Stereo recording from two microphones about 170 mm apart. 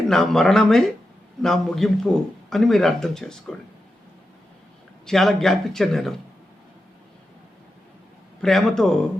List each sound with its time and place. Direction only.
0.1 s a man's voice: 5° left (ahead or behind)
5.0 s a man's voice: 5° left (ahead or behind)
8.4 s a man's voice: centre (ahead or behind)